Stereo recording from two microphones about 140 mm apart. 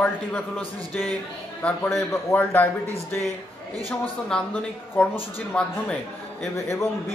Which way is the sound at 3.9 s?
10° left (ahead or behind).